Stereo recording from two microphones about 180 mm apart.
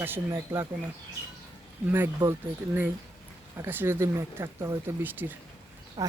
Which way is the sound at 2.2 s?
25° right (ahead or behind).